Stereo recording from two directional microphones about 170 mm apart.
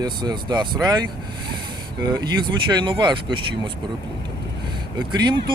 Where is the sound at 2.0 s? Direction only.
25° right (ahead or behind).